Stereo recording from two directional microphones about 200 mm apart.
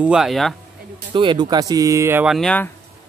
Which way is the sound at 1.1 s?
25° right (ahead or behind).